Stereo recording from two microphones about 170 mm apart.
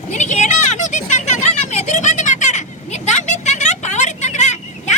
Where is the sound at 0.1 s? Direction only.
45° left (ahead or behind).